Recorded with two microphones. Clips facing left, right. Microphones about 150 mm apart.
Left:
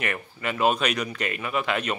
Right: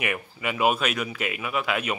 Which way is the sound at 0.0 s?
10° right (ahead or behind).